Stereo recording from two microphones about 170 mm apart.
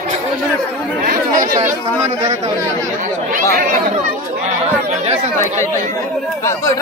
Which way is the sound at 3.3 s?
55° right (ahead or behind).